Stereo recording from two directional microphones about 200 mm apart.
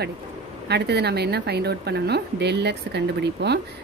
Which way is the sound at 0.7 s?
55° right (ahead or behind).